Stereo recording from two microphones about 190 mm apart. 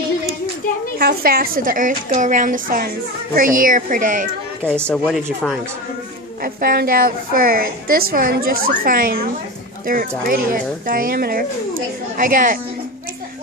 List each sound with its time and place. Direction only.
0.9 s a woman's voice: 50° right (ahead or behind)
4.6 s speech: 5° left (ahead or behind)
6.4 s a woman's voice: 50° right (ahead or behind)